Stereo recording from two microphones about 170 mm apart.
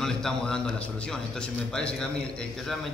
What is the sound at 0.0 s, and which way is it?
A man's voice, 5° left (ahead or behind).